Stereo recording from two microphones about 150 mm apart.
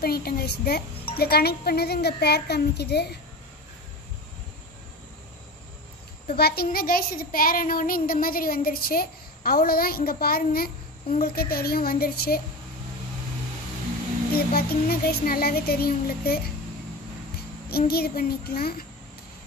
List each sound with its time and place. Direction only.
0.0 s speech: 90° left
6.2 s child singing: 90° left
14.3 s speech: 90° left
17.6 s speech: 90° left